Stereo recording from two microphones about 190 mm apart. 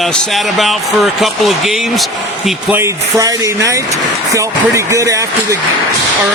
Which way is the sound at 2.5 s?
10° right (ahead or behind).